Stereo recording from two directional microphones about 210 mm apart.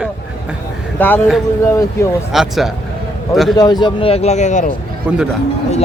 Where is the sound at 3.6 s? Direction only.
20° left (ahead or behind).